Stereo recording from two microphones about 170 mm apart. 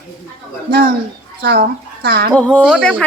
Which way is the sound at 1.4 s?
65° right (ahead or behind).